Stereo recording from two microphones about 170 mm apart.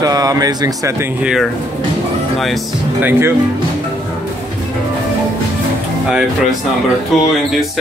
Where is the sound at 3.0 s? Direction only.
10° right (ahead or behind).